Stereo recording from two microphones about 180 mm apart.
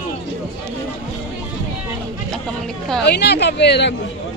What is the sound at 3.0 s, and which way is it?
Speech, 70° left (ahead or behind).